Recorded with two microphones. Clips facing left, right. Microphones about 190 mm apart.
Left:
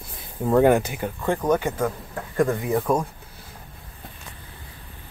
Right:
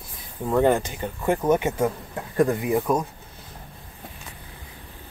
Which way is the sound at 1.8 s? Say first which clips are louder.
Right 2 dB; 20° right (ahead or behind).